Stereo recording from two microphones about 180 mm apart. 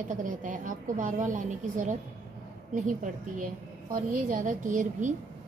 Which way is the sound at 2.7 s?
45° right (ahead or behind).